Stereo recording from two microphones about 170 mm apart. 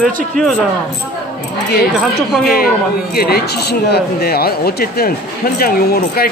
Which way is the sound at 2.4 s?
65° left (ahead or behind).